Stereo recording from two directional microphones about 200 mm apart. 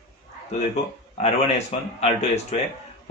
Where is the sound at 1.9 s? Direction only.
30° left (ahead or behind).